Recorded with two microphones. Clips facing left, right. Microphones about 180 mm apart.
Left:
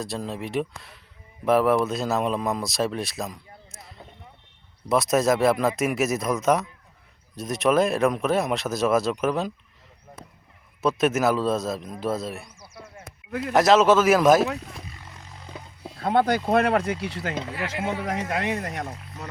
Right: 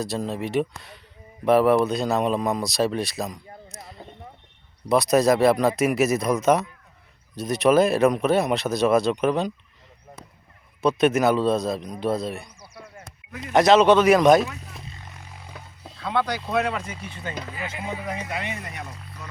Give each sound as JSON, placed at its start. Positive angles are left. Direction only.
{"t": 0.0, "sound": "a man's voice", "side_deg": 0}
{"t": 10.8, "sound": "a man's voice", "side_deg": 0}
{"t": 13.5, "sound": "a man's voice", "side_deg": 0}
{"t": 15.6, "sound": "roaring cats", "side_deg": 25}
{"t": 16.0, "sound": "speech", "side_deg": 50}